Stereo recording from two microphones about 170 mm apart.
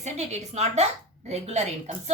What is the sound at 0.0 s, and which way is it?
A woman's voice, 40° right (ahead or behind).